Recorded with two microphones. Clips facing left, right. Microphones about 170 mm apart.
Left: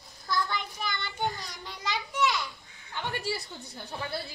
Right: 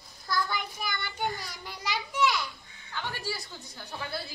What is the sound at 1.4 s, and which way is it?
Children playing, 20° left (ahead or behind).